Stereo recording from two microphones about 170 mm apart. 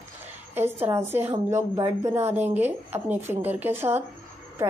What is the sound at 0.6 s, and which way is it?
A woman's voice, 15° right (ahead or behind).